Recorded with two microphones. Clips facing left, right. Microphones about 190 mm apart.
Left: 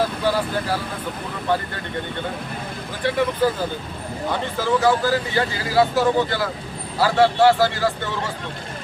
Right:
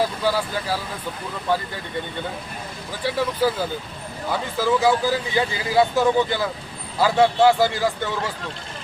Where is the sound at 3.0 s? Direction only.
10° right (ahead or behind).